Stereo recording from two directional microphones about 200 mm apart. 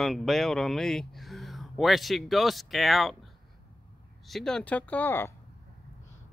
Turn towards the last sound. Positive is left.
turn(degrees=10)  # may be behind; listen again after turning